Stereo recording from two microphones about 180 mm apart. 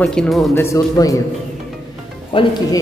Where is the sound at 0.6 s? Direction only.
15° left (ahead or behind).